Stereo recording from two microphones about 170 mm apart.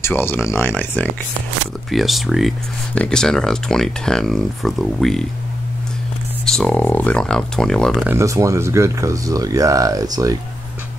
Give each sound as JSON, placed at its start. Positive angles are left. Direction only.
{"t": 0.0, "sound": "speech", "side_deg": 10}
{"t": 1.9, "sound": "speech", "side_deg": 0}
{"t": 6.4, "sound": "speech", "side_deg": 5}
{"t": 8.1, "sound": "speech", "side_deg": -15}